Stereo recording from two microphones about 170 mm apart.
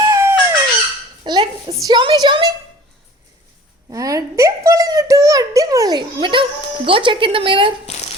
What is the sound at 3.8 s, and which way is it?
A child's voice, 20° right (ahead or behind).